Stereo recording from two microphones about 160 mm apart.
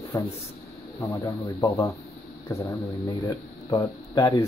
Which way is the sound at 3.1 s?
25° left (ahead or behind).